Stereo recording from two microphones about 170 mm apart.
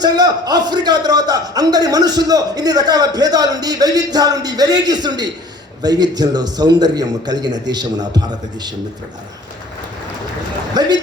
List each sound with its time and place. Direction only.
0.0 s a man's voice: 25° right (ahead or behind)
10.8 s a man's voice: 25° right (ahead or behind)